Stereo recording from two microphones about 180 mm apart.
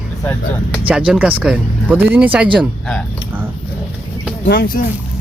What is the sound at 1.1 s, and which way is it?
Speech, 5° right (ahead or behind).